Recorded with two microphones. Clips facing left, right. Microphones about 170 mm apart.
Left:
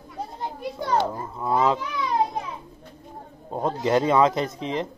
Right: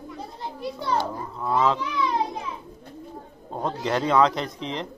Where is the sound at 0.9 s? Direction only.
20° left (ahead or behind).